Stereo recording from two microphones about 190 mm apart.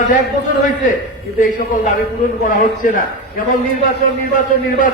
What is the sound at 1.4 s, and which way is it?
A man's voice, 40° left (ahead or behind).